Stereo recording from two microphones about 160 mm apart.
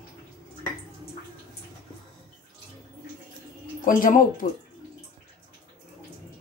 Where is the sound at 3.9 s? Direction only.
60° left (ahead or behind).